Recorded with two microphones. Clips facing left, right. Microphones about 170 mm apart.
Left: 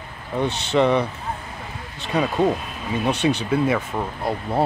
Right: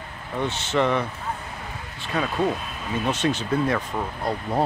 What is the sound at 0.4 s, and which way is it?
Speech, 15° left (ahead or behind).